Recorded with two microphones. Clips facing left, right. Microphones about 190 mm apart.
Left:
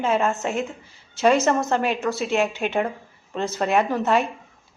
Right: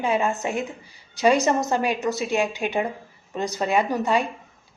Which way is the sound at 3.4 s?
15° right (ahead or behind).